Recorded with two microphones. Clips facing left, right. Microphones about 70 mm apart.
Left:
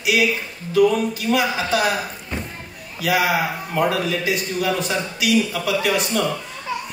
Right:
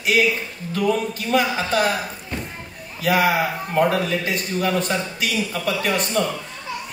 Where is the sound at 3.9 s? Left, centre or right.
Right.